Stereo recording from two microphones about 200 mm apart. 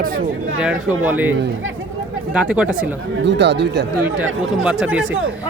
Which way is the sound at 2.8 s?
65° right (ahead or behind).